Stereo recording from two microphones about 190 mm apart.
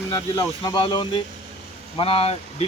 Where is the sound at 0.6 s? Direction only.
25° left (ahead or behind).